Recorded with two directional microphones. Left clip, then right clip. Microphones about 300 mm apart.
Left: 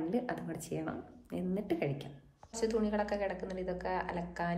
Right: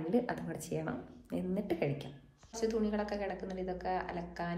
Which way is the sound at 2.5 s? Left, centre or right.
Centre.